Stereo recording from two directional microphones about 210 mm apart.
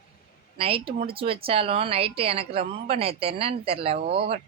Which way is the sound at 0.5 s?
25° right (ahead or behind).